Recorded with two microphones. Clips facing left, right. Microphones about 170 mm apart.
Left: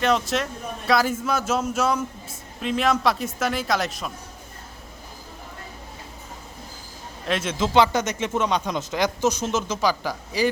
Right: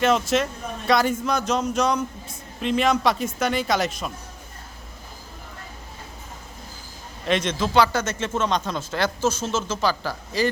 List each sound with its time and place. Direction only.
0.0 s a woman's voice: centre (ahead or behind)
7.3 s a woman's voice: 5° left (ahead or behind)
7.5 s speech: 20° left (ahead or behind)